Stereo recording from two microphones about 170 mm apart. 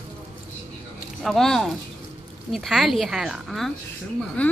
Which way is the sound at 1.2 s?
Centre (ahead or behind).